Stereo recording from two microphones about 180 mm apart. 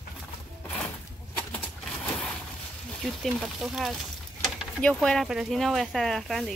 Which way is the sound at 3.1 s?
Centre (ahead or behind).